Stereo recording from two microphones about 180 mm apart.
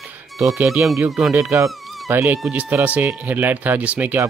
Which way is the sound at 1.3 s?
15° right (ahead or behind).